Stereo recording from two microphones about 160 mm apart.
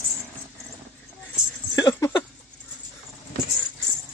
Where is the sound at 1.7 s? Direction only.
20° left (ahead or behind).